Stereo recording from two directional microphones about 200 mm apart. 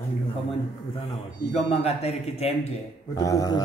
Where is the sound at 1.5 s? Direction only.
30° left (ahead or behind).